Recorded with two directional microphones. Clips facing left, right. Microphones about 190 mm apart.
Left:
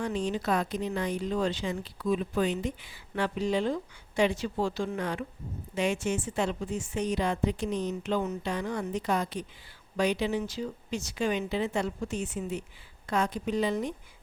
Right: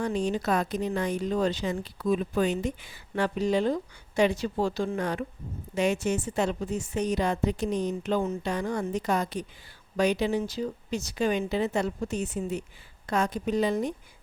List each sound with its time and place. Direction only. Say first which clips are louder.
0.0 s speech: right 3 dB; 45° right (ahead or behind)